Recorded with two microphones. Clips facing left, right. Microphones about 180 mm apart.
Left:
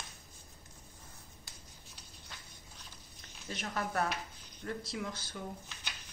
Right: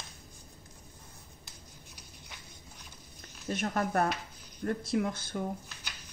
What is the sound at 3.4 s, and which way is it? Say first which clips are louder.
Speech: right 7 dB; 50° right (ahead or behind).